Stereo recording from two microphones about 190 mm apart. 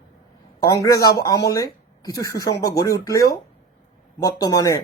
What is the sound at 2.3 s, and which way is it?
Speech, 55° left (ahead or behind).